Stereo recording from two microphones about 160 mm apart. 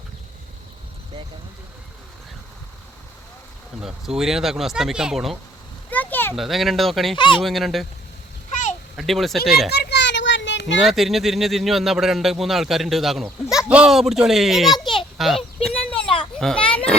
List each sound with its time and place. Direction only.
3.8 s speech: 5° right (ahead or behind)
5.9 s a sound: 10° left (ahead or behind)
6.3 s speech: centre (ahead or behind)
7.2 s speech: 30° left (ahead or behind)
7.4 s speech: centre (ahead or behind)
9.0 s speech: centre (ahead or behind)
9.7 s a sound: 90° left
10.8 s speech: centre (ahead or behind)
15.2 s a sound: centre (ahead or behind)
16.4 s children playing: 5° left (ahead or behind)